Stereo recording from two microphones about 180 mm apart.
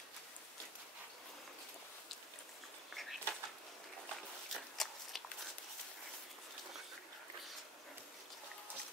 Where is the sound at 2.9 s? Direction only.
Centre (ahead or behind).